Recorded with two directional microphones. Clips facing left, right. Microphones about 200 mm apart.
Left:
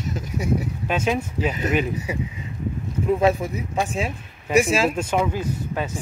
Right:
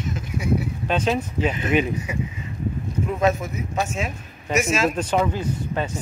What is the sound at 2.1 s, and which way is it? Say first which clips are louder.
Speech: left 1 dB; 35° left (ahead or behind).